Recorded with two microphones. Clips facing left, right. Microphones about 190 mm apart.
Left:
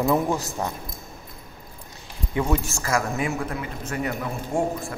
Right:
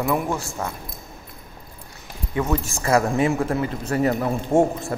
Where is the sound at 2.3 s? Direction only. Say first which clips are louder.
Right 1 dB; 25° left (ahead or behind).